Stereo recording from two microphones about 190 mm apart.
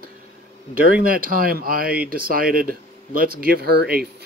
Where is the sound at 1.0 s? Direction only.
50° right (ahead or behind).